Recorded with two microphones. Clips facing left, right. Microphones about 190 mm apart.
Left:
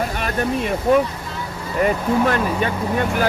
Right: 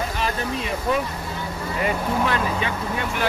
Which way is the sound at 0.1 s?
55° left (ahead or behind).